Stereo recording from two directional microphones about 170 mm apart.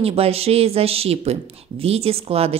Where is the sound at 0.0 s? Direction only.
35° right (ahead or behind).